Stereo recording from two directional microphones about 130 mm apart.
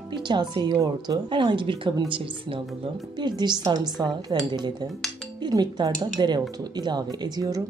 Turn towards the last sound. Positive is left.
turn(degrees=-30)  # may be behind; listen again after turning